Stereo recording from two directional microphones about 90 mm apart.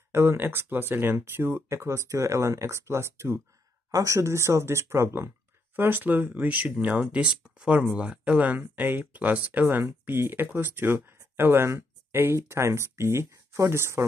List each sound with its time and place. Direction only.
0.1 s speech: 25° right (ahead or behind)